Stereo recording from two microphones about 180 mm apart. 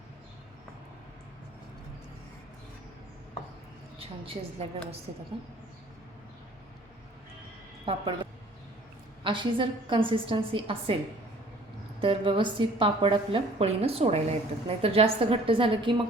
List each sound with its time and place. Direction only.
7.9 s a woman's voice: 30° right (ahead or behind)
11.9 s a woman's voice: 30° right (ahead or behind)